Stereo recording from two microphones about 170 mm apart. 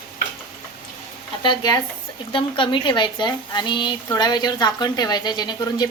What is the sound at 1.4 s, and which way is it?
Speech, 25° left (ahead or behind).